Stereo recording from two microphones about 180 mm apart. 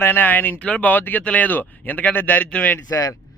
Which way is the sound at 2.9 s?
20° left (ahead or behind).